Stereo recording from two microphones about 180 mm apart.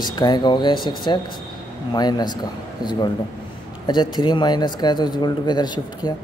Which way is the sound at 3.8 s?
25° left (ahead or behind).